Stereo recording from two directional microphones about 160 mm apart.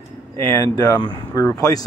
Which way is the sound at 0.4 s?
20° left (ahead or behind).